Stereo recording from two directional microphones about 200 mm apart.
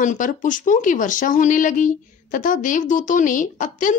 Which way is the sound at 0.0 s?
40° left (ahead or behind).